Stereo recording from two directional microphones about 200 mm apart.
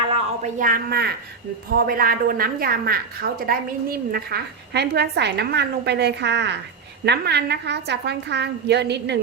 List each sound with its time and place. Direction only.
0.1 s a woman's voice: 40° right (ahead or behind); by 9.1 s 60° right (ahead or behind)